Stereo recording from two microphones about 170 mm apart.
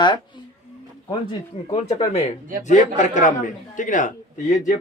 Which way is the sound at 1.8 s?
40° left (ahead or behind).